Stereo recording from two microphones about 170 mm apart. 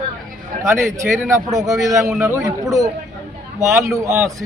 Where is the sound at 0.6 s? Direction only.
20° right (ahead or behind).